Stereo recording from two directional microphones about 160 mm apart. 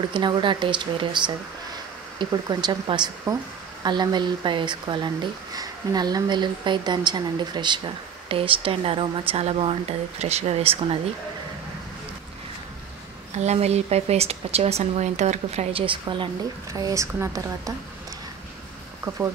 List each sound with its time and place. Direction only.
0.1 s speech: 30° right (ahead or behind)
13.4 s speech: 45° right (ahead or behind)
16.7 s speech: 20° right (ahead or behind)
19.1 s speech: 25° right (ahead or behind)